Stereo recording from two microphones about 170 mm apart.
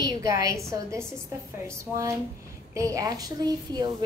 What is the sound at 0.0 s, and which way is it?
A woman's voice, 20° right (ahead or behind).